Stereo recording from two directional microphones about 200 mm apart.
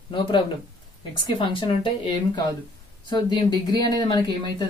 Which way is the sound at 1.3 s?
25° left (ahead or behind).